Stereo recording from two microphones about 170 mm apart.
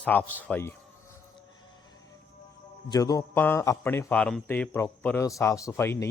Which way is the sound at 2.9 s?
20° left (ahead or behind).